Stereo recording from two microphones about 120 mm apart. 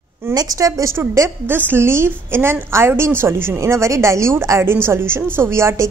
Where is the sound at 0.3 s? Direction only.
30° right (ahead or behind).